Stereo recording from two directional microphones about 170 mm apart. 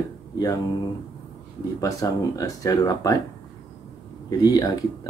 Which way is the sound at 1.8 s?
20° left (ahead or behind).